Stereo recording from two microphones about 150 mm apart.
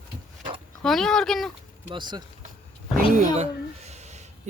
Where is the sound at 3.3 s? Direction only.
45° right (ahead or behind).